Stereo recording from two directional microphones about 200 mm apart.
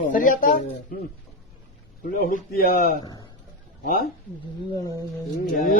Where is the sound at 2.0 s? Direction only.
45° left (ahead or behind).